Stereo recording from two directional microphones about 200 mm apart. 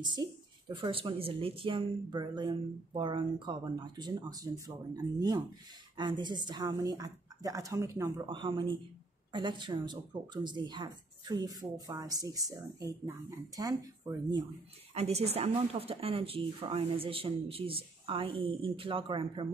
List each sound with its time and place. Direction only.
0.0 s speech: 20° right (ahead or behind)
15.0 s speech: 30° right (ahead or behind)